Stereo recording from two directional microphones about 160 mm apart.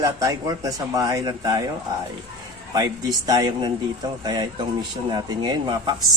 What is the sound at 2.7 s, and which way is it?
Speech, 25° right (ahead or behind).